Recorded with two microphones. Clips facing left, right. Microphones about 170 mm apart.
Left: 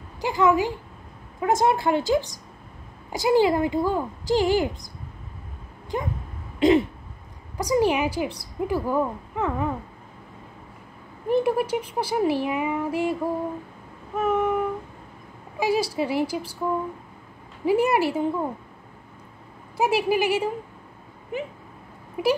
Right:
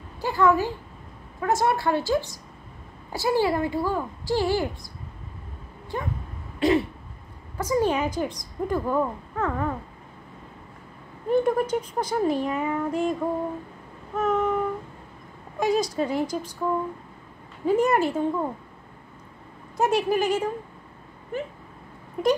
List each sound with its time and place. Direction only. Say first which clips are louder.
0.2 s a woman's voice: left 1 dB; 15° left (ahead or behind)
6.6 s a sound: left 3 dB; 20° left (ahead or behind)
7.5 s speech: left 2 dB; 15° left (ahead or behind)
11.4 s speech: even; 10° left (ahead or behind)
14.1 s a sound: left 1 dB; 5° left (ahead or behind)
15.5 s speech: even; 5° left (ahead or behind)
17.6 s speech: even; 10° left (ahead or behind)
19.8 s speech: left 1 dB; 5° left (ahead or behind)
22.2 s speech: even; 10° left (ahead or behind)